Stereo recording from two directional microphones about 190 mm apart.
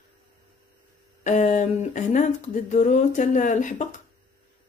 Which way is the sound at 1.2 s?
40° left (ahead or behind).